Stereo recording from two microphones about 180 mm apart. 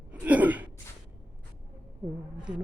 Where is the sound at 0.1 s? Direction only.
10° right (ahead or behind).